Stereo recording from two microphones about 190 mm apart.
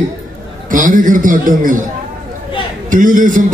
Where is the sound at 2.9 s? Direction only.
45° right (ahead or behind).